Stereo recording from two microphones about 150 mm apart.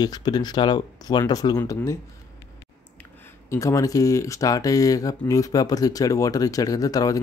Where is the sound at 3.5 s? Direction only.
20° left (ahead or behind).